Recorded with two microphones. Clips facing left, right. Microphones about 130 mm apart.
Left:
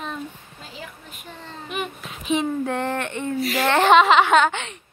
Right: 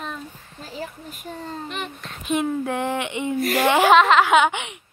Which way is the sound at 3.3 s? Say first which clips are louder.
Right 3 dB; 50° right (ahead or behind).